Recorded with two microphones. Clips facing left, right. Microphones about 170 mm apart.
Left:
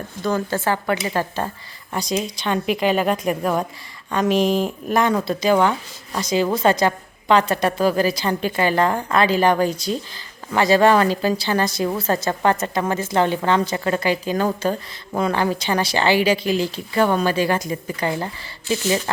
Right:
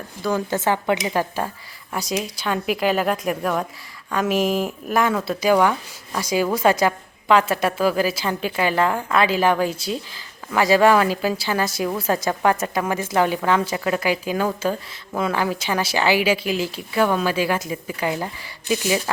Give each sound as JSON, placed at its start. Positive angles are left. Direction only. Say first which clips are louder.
{"t": 0.2, "sound": "a woman's voice", "louder": "even", "side_deg": -10}